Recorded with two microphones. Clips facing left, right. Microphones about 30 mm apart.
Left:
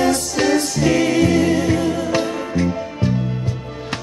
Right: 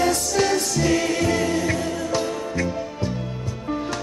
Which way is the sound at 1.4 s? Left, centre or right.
Centre.